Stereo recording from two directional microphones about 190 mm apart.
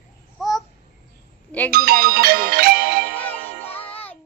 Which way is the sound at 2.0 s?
55° right (ahead or behind).